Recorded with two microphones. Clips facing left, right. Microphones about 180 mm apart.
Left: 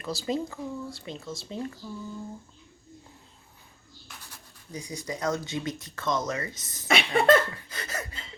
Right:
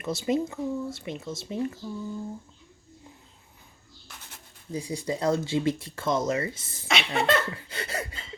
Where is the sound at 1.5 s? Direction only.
30° left (ahead or behind).